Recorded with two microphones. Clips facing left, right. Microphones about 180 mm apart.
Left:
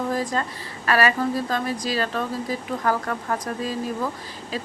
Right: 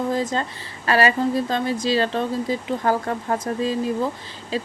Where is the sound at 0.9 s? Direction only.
25° right (ahead or behind).